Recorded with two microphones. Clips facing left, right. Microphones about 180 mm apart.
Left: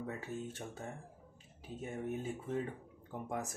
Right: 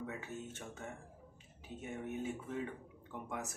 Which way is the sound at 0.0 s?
35° left (ahead or behind).